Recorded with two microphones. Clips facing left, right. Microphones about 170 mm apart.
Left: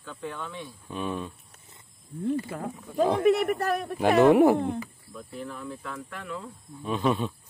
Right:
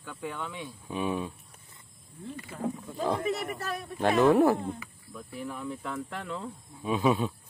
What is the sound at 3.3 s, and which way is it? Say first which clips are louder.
Speech: left 8 dB; 60° left (ahead or behind).